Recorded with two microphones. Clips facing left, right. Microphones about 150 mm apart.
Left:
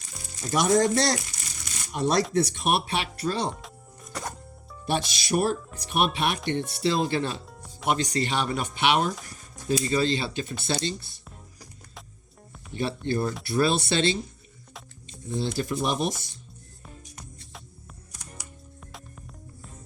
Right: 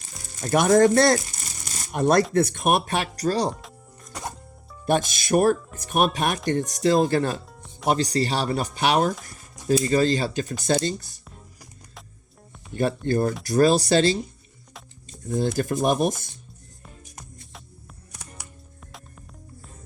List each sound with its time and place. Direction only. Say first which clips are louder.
0.4 s speech: right 5 dB; 55° right (ahead or behind); by 3.5 s 40° right (ahead or behind)
3.5 s music: right 1 dB; centre (ahead or behind)
4.9 s speech: right 5 dB; 50° right (ahead or behind)
7.4 s music: even; centre (ahead or behind)
7.9 s speech: right 3 dB; 35° right (ahead or behind)
13.1 s speech: right 4 dB; 45° right (ahead or behind)
18.1 s music: right 2 dB; 60° right (ahead or behind)
18.9 s music: even; centre (ahead or behind)